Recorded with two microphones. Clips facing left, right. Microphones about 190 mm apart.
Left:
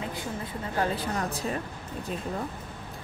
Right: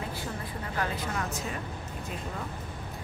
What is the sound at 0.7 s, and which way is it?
Speech, 30° left (ahead or behind).